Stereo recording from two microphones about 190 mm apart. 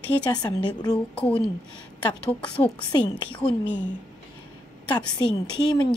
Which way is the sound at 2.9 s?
20° left (ahead or behind).